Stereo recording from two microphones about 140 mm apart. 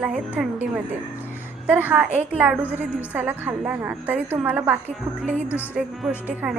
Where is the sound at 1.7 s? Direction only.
10° right (ahead or behind).